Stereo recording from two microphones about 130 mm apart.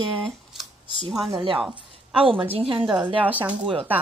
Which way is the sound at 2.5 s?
40° right (ahead or behind).